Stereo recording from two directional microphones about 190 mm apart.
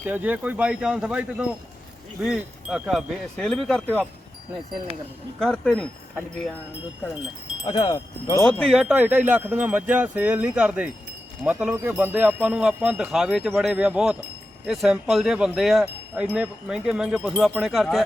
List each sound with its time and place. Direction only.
0.1 s wind chime: 10° right (ahead or behind)
5.4 s wind chime: 5° left (ahead or behind)
7.6 s speech: 30° left (ahead or behind)
7.9 s speech: 15° left (ahead or behind)
8.4 s wind chime: 5° left (ahead or behind)